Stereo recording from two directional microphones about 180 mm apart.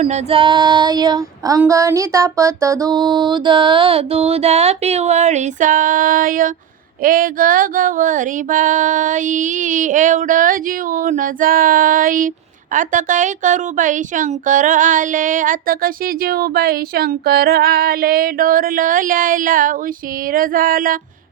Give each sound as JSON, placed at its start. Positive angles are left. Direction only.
{"t": 0.0, "sound": "female singing", "side_deg": -30}
{"t": 7.0, "sound": "a woman's voice", "side_deg": -50}